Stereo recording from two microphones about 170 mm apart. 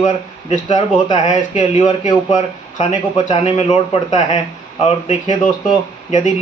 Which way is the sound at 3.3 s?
40° left (ahead or behind).